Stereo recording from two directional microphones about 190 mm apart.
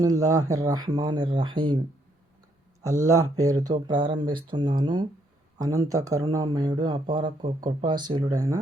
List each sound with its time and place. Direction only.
0.0 s speech: 20° right (ahead or behind)
3.1 s speech: 15° right (ahead or behind)